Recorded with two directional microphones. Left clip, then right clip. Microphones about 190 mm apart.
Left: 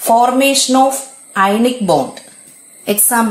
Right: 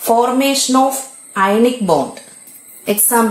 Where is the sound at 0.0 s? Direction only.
15° left (ahead or behind).